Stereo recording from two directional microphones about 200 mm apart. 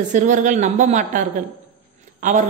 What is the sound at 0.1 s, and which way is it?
A woman's voice, 40° right (ahead or behind).